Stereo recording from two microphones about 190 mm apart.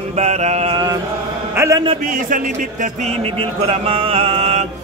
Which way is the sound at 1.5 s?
15° right (ahead or behind).